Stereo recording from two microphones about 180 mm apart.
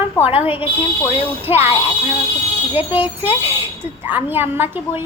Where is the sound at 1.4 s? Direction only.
10° right (ahead or behind).